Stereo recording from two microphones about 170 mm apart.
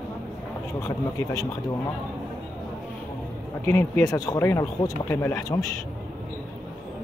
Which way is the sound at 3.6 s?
15° left (ahead or behind).